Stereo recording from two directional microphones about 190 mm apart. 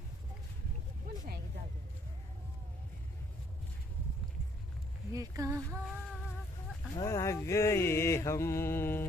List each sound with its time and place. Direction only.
1.1 s vehicle: 55° right (ahead or behind)
5.1 s speech: 15° right (ahead or behind)
6.9 s mantra: 20° left (ahead or behind)